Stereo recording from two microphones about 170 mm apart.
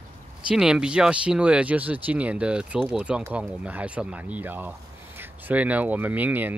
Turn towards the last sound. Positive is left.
turn(degrees=-10)  # may be behind; listen again after turning